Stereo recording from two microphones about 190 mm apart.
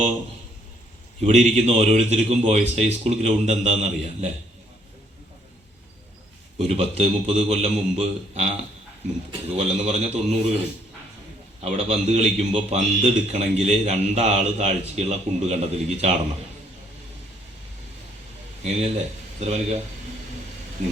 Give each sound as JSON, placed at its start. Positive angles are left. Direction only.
{"t": 1.2, "sound": "a man's voice", "side_deg": -35}
{"t": 6.7, "sound": "a man's voice", "side_deg": -35}
{"t": 9.5, "sound": "a man's voice", "side_deg": -35}
{"t": 11.6, "sound": "a man's voice", "side_deg": -35}
{"t": 18.6, "sound": "a man's voice", "side_deg": -35}